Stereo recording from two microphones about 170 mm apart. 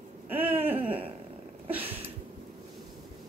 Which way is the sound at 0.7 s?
30° right (ahead or behind).